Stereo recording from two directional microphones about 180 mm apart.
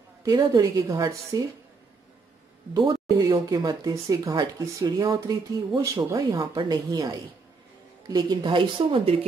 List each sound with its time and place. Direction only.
0.2 s speech: 20° right (ahead or behind)
2.7 s speech: 20° right (ahead or behind)